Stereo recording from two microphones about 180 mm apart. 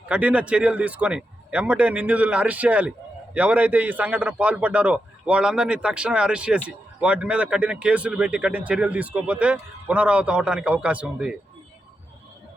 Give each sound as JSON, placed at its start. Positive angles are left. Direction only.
{"t": 0.1, "sound": "speech", "side_deg": -5}